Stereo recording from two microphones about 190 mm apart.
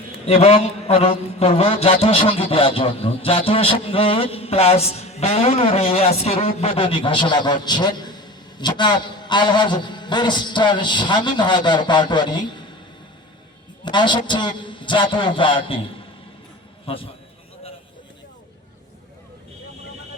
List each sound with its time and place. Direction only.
0.3 s a man's voice: 30° left (ahead or behind)
13.8 s a man's voice: 25° left (ahead or behind)
16.8 s a man's voice: 30° left (ahead or behind)